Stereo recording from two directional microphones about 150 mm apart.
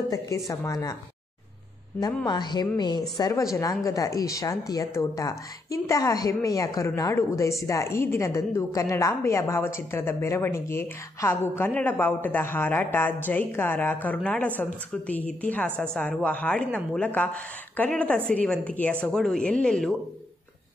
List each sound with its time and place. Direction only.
0.5 s speech: 25° left (ahead or behind)
2.2 s a woman's voice: 30° left (ahead or behind); by 20.0 s 5° left (ahead or behind)